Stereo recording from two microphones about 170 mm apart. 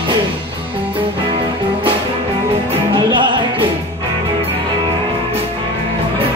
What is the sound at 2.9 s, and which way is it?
Music, 30° right (ahead or behind).